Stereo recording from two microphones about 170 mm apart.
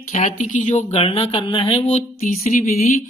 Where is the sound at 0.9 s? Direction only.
35° left (ahead or behind).